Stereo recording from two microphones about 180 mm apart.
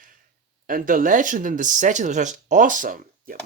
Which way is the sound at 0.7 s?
50° right (ahead or behind).